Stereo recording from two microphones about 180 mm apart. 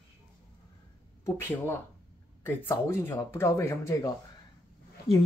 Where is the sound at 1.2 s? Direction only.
15° left (ahead or behind).